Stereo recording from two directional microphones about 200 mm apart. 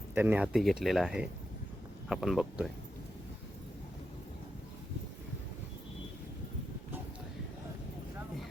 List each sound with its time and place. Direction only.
0.1 s speech: 10° right (ahead or behind)